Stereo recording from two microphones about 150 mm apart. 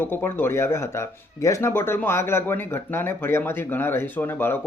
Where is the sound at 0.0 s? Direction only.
15° left (ahead or behind).